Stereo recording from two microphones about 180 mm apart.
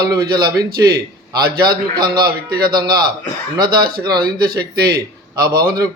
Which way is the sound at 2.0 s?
55° right (ahead or behind).